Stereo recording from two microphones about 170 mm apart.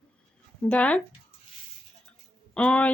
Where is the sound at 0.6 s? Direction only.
5° left (ahead or behind).